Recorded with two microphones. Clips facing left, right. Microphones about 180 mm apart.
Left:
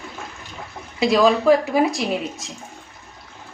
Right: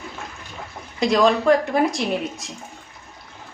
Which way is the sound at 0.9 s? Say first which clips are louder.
Left 1 dB; 5° left (ahead or behind).